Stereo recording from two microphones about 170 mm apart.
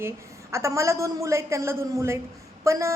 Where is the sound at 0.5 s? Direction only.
15° right (ahead or behind).